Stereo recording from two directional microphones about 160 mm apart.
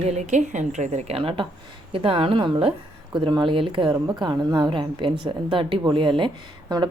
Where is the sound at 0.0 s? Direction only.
45° right (ahead or behind).